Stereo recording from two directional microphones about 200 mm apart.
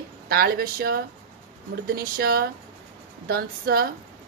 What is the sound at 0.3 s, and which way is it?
A woman's voice, 50° right (ahead or behind).